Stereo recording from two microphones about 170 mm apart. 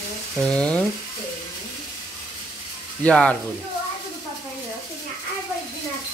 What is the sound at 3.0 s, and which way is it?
Speech, 5° left (ahead or behind).